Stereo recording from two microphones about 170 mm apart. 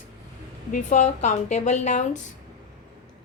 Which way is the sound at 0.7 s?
45° left (ahead or behind).